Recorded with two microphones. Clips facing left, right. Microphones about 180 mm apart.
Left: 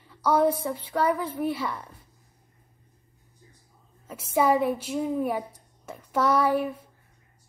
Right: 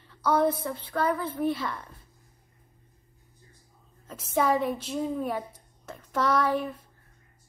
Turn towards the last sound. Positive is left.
turn(degrees=10)  # may be behind; listen again after turning